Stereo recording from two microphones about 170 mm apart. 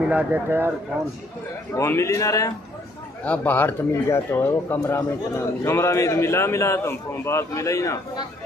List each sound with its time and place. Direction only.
0.0 s speech: 10° right (ahead or behind)
1.8 s speech: 15° left (ahead or behind)